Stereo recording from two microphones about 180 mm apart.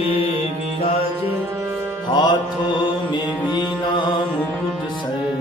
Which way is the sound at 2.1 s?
25° left (ahead or behind).